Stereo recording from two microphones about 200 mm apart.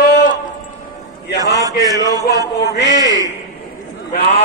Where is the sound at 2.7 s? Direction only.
60° left (ahead or behind).